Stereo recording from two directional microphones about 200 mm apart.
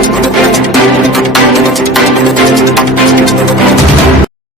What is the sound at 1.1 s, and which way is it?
Music, centre (ahead or behind).